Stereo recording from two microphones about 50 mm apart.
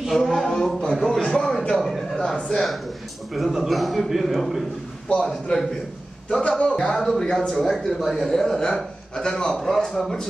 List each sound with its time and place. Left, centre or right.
0.1 s speech: centre
0.9 s a man's voice: centre
1.8 s a sound: centre
2.3 s speech: centre
3.3 s a man's voice: centre
6.9 s a man's voice: centre
7.2 s a man's voice: centre